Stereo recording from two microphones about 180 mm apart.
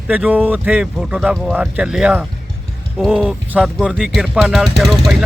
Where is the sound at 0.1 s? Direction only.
10° right (ahead or behind).